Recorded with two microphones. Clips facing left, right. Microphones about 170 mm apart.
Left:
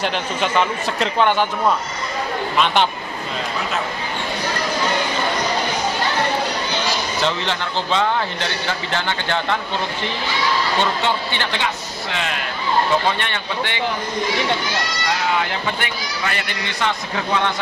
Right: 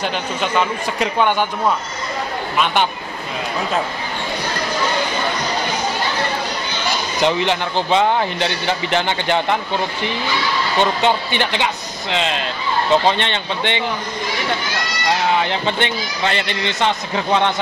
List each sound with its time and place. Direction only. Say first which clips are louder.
0.0 s a man's voice: even; 5° right (ahead or behind)
2.5 s a man's voice: even; 5° right (ahead or behind)
7.2 s a man's voice: right 8 dB; 15° right (ahead or behind)
10.8 s a man's voice: right 4 dB; 20° right (ahead or behind)
15.4 s a man's voice: right 4 dB; 25° right (ahead or behind)